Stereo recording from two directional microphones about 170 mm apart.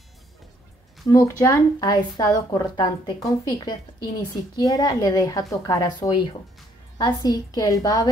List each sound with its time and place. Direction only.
1.0 s a woman's voice: 20° left (ahead or behind)